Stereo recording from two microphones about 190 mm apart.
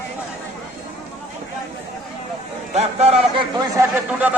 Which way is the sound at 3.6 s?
15° right (ahead or behind).